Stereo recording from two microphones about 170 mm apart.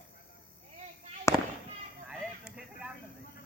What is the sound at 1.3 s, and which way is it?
Fireworks, 15° left (ahead or behind).